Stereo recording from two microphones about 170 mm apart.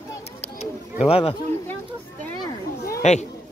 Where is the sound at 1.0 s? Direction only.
35° left (ahead or behind).